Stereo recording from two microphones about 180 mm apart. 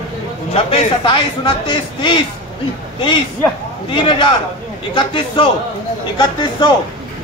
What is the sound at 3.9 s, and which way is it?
Speech, 25° left (ahead or behind).